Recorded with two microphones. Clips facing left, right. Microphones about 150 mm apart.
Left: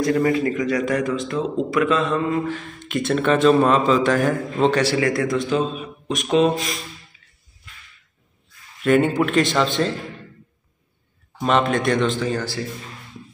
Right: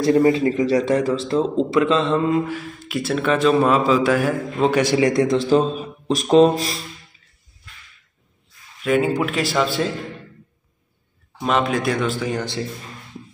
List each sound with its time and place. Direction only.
0.0 s a man's voice: 30° right (ahead or behind)
2.4 s speech: 10° right (ahead or behind); by 6.8 s 35° right (ahead or behind)
8.8 s a man's voice: centre (ahead or behind)
11.4 s a man's voice: centre (ahead or behind); by 12.6 s 20° right (ahead or behind)